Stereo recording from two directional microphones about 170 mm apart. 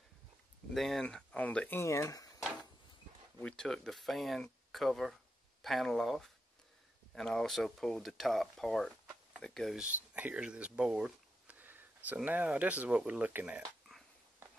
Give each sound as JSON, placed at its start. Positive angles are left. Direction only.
{"t": 0.7, "sound": "speech", "side_deg": 0}
{"t": 1.8, "sound": "speech", "side_deg": 15}
{"t": 3.3, "sound": "speech", "side_deg": 5}